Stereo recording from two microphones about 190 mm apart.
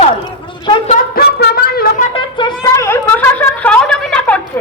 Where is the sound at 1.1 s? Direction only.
55° left (ahead or behind).